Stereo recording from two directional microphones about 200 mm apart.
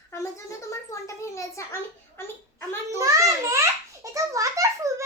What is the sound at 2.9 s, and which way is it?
Babbling, 15° right (ahead or behind).